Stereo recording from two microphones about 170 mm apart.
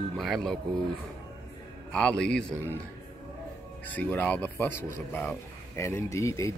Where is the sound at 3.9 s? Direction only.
10° left (ahead or behind).